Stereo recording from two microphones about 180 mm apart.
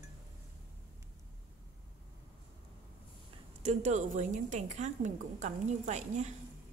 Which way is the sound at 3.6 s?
40° right (ahead or behind).